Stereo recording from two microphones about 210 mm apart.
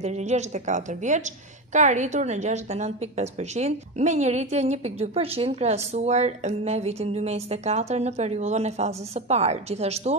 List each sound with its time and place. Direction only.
0.0 s a woman's voice: 35° right (ahead or behind)